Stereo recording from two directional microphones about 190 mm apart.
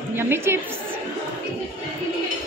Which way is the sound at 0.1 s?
10° right (ahead or behind).